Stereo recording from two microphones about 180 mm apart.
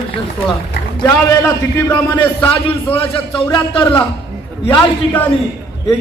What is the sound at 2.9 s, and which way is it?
Speech, 30° left (ahead or behind).